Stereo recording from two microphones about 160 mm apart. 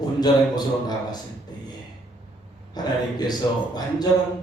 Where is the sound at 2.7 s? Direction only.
25° left (ahead or behind).